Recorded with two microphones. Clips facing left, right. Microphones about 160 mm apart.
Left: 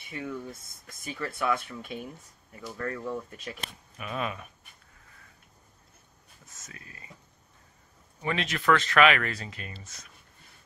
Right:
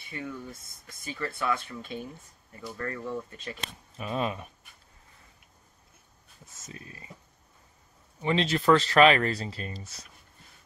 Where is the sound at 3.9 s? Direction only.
30° right (ahead or behind).